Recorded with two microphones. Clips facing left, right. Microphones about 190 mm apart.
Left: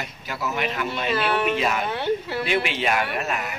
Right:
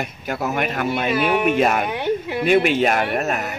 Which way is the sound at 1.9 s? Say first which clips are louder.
Right 2 dB; 15° right (ahead or behind).